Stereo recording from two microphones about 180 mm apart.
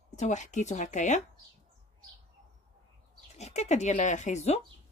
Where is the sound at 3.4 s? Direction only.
40° left (ahead or behind).